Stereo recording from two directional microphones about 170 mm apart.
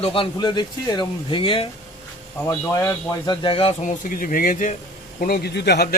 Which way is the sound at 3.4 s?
35° left (ahead or behind).